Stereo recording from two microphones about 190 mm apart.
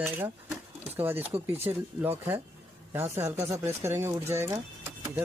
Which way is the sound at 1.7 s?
25° right (ahead or behind).